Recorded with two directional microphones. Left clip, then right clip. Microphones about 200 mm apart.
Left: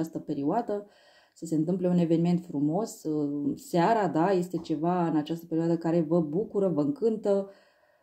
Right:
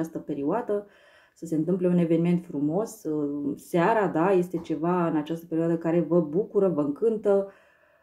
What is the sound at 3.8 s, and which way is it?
Speech, 40° left (ahead or behind).